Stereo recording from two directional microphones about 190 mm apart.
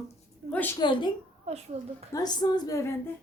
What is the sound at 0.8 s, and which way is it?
Speech, 25° left (ahead or behind).